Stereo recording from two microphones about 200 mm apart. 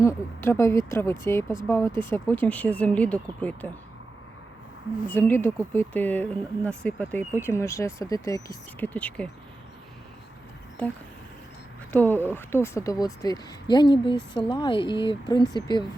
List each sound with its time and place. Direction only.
0.0 s speech: 15° left (ahead or behind)
5.0 s speech: 10° left (ahead or behind)
10.8 s speech: 10° left (ahead or behind)